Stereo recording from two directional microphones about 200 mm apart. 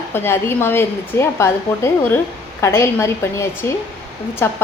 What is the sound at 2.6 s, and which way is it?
A woman's voice, 15° left (ahead or behind).